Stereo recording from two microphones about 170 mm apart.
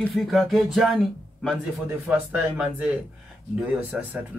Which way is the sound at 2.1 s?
5° right (ahead or behind).